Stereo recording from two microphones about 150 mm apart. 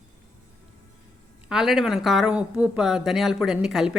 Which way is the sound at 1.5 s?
5° right (ahead or behind).